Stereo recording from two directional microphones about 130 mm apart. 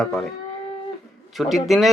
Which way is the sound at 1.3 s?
Centre (ahead or behind).